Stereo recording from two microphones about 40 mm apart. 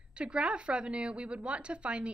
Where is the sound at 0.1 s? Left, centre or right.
Right.